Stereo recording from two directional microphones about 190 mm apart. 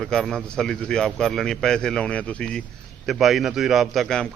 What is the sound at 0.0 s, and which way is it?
A man's voice, centre (ahead or behind).